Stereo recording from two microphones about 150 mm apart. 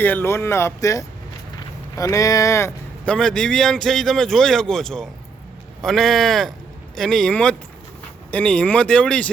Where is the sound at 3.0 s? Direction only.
5° left (ahead or behind).